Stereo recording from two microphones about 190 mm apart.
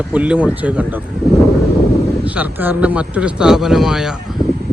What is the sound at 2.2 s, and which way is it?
Speech, 10° right (ahead or behind).